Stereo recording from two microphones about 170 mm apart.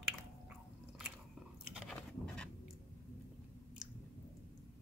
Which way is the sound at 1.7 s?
5° left (ahead or behind).